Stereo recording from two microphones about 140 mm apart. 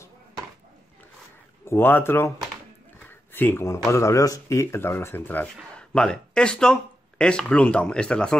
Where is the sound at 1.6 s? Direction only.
15° left (ahead or behind).